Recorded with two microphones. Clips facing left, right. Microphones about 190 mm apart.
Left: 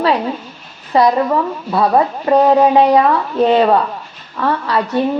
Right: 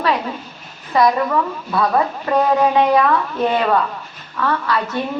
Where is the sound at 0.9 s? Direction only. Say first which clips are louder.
Left 3 dB; 30° left (ahead or behind).